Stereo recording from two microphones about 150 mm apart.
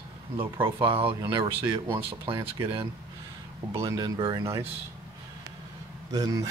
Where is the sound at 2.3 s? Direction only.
20° right (ahead or behind).